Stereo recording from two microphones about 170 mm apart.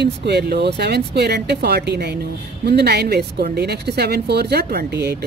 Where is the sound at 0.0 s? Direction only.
80° right.